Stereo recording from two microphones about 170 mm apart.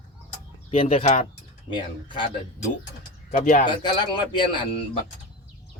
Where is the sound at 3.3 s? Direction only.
50° left (ahead or behind).